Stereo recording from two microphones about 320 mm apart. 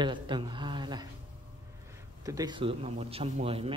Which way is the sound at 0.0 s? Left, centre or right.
Centre.